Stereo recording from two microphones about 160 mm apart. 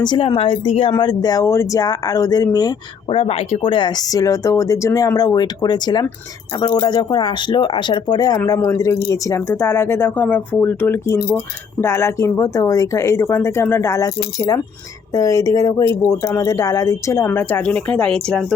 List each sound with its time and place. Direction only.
0.0 s speech: 25° left (ahead or behind)
3.1 s speech: 35° left (ahead or behind); by 18.4 s 5° left (ahead or behind)